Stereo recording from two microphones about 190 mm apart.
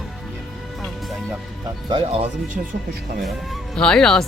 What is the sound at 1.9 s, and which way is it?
Speech, 30° right (ahead or behind).